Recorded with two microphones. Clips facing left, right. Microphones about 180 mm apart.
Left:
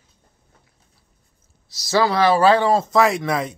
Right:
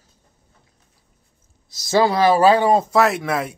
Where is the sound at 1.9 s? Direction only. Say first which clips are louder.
Right 1 dB; 25° right (ahead or behind).